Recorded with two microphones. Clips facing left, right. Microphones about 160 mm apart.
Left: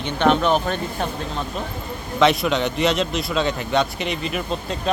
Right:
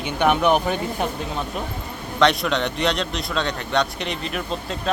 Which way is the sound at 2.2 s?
Centre (ahead or behind).